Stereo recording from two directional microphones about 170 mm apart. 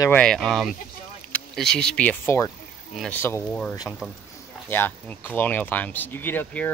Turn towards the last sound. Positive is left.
turn(degrees=10)  # may be behind; listen again after turning